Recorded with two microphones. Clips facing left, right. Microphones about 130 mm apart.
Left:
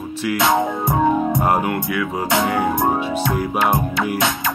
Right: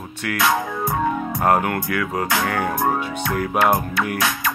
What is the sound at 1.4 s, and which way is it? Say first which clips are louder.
Music: even; 10° left (ahead or behind).